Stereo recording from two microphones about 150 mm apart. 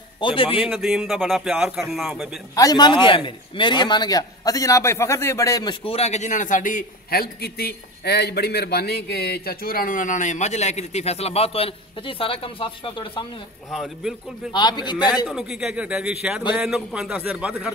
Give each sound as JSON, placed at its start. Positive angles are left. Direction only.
{"t": 0.2, "sound": "speech", "side_deg": 35}
{"t": 0.7, "sound": "speech", "side_deg": 0}
{"t": 2.5, "sound": "a man's voice", "side_deg": 25}
{"t": 5.9, "sound": "a man's voice", "side_deg": 45}
{"t": 13.7, "sound": "speech", "side_deg": 0}
{"t": 14.5, "sound": "a man's voice", "side_deg": 30}
{"t": 15.2, "sound": "a man's voice", "side_deg": -5}